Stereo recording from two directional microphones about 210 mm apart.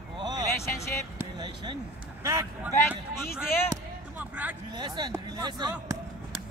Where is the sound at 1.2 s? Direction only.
20° right (ahead or behind).